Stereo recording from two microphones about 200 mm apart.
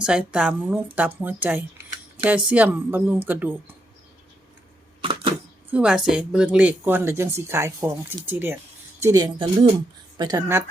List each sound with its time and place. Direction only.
0.0 s speech: 5° right (ahead or behind)
5.7 s speech: 5° right (ahead or behind)